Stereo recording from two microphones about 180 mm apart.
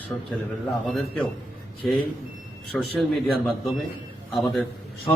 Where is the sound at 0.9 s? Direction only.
10° left (ahead or behind).